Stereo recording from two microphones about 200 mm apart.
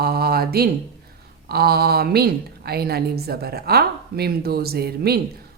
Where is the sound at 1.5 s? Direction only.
50° right (ahead or behind).